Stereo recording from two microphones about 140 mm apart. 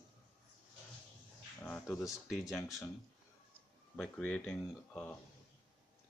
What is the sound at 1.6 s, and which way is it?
Speech, 10° left (ahead or behind).